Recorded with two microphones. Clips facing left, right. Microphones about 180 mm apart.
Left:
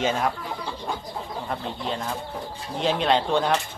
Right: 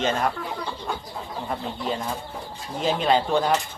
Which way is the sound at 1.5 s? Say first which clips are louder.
Right 2 dB; 5° right (ahead or behind).